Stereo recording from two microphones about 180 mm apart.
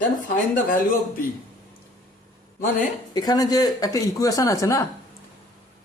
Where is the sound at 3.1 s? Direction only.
20° left (ahead or behind).